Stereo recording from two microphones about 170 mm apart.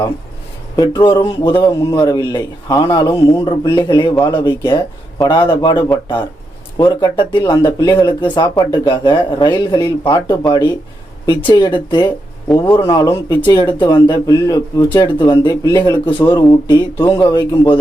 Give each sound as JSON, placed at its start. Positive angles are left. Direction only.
{"t": 0.8, "sound": "speech", "side_deg": 25}